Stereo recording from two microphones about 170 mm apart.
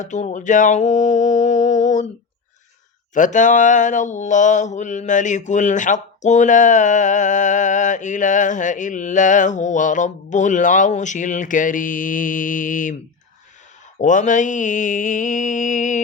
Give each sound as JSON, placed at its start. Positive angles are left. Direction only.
{"t": 0.0, "sound": "mantra", "side_deg": 45}
{"t": 3.2, "sound": "mantra", "side_deg": 45}
{"t": 14.0, "sound": "mantra", "side_deg": 50}